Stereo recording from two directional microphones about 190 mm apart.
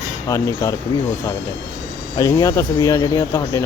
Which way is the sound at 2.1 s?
20° left (ahead or behind).